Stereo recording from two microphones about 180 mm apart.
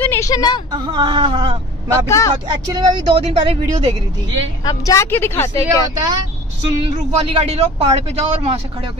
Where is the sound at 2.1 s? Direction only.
15° left (ahead or behind).